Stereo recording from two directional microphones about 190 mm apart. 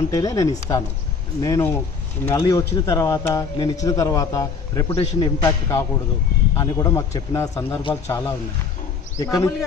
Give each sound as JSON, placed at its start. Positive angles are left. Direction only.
{"t": 0.1, "sound": "a man's voice", "side_deg": 15}